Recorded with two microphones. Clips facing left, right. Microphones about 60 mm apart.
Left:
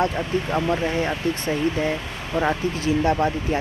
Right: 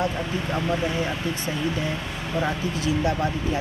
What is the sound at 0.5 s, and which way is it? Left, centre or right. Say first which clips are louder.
Speech: left 3 dB; centre.